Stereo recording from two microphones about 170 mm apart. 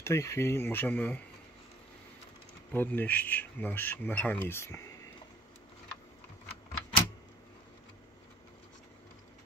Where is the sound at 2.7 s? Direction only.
10° left (ahead or behind).